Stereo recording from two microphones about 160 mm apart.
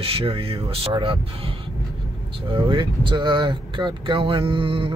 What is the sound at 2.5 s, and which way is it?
Speech, 30° right (ahead or behind).